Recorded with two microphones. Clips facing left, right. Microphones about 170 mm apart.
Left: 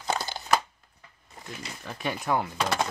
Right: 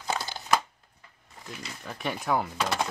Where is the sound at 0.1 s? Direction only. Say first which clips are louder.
Left 1 dB; centre (ahead or behind).